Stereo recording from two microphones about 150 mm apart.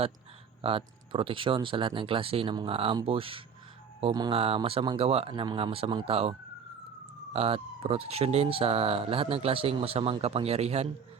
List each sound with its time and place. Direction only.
0.6 s speech: 35° right (ahead or behind)
4.1 s speech: 25° right (ahead or behind)
4.4 s speech: 40° right (ahead or behind)
7.3 s speech: 40° right (ahead or behind)